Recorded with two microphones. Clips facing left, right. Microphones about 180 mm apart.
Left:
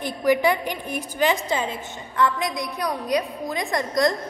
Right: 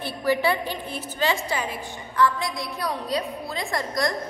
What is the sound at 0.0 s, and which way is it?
A woman's voice, 15° left (ahead or behind).